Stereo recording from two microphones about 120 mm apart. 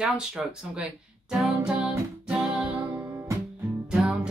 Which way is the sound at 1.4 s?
10° right (ahead or behind).